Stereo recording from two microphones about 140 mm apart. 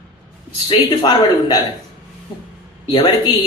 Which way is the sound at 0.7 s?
30° left (ahead or behind).